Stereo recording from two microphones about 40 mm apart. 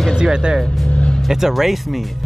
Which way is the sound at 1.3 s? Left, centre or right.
Centre.